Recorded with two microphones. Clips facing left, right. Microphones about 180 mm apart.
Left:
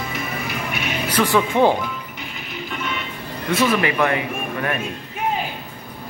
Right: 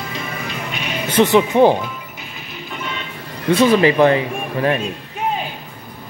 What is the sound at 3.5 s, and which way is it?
Speech, 30° right (ahead or behind).